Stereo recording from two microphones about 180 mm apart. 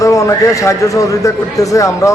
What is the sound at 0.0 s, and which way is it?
A man's voice, 15° left (ahead or behind).